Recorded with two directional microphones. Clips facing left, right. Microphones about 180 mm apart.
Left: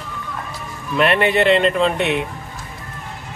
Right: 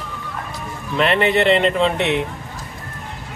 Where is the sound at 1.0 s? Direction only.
Centre (ahead or behind).